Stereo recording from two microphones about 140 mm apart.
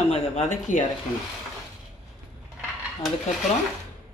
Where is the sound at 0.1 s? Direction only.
55° left (ahead or behind).